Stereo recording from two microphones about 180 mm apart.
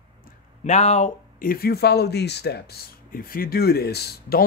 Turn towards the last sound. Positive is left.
turn(degrees=60)  # may be behind; listen again after turning